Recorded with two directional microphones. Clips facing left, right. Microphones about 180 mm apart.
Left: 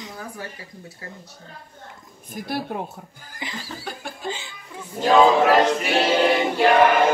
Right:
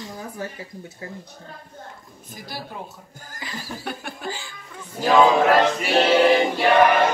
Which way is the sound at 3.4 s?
20° left (ahead or behind).